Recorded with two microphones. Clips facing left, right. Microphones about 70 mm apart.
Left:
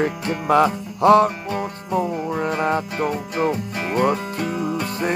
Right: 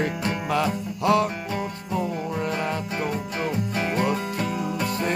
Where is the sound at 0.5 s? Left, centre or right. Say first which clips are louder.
Left 10 dB; left.